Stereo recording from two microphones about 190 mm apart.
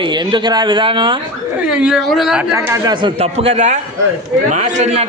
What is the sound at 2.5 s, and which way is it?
A man's voice, 15° right (ahead or behind).